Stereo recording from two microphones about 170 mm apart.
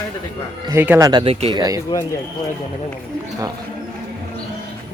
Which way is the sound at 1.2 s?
35° right (ahead or behind).